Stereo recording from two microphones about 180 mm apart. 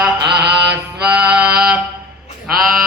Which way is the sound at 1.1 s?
5° right (ahead or behind).